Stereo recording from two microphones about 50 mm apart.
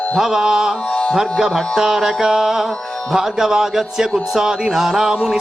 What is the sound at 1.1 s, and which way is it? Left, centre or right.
Music, centre.